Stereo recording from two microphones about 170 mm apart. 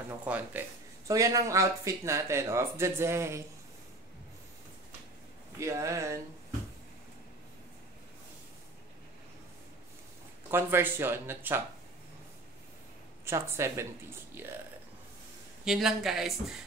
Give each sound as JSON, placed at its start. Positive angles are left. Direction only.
{"t": 0.2, "sound": "speech", "side_deg": -10}
{"t": 5.6, "sound": "speech", "side_deg": -15}
{"t": 10.5, "sound": "speech", "side_deg": -15}
{"t": 13.2, "sound": "speech", "side_deg": -15}
{"t": 15.6, "sound": "speech", "side_deg": 0}